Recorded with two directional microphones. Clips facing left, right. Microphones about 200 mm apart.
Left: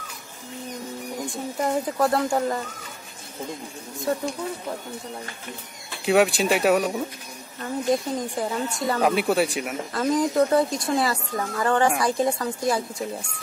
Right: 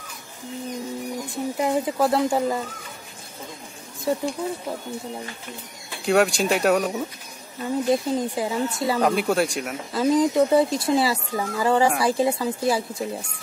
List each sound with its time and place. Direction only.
1.6 s speech: 5° right (ahead or behind)
4.1 s speech: 5° right (ahead or behind)
6.0 s speech: 5° left (ahead or behind)